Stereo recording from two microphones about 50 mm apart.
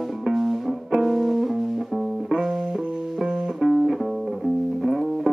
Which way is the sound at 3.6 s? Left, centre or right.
Centre.